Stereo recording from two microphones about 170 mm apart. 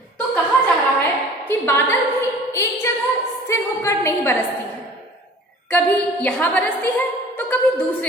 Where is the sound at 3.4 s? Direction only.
15° left (ahead or behind).